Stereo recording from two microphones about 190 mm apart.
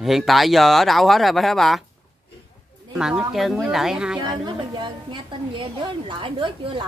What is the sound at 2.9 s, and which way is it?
Speech, 5° right (ahead or behind).